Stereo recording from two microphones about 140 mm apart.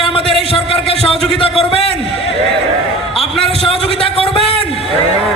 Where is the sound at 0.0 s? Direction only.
40° left (ahead or behind).